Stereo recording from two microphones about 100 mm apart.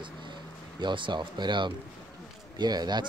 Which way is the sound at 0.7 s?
50° right (ahead or behind).